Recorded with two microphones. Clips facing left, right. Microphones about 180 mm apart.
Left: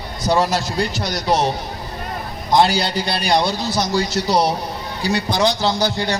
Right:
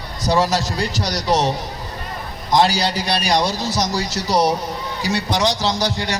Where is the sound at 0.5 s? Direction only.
35° right (ahead or behind).